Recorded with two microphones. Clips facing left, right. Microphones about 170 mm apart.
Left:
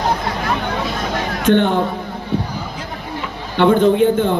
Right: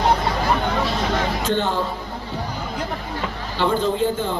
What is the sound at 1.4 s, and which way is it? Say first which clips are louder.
Speech: left 7 dB; 65° left (ahead or behind).